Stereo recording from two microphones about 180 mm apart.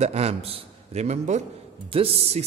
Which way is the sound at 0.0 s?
35° right (ahead or behind).